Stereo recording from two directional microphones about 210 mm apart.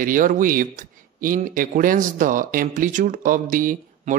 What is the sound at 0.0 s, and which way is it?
Speech, 40° right (ahead or behind).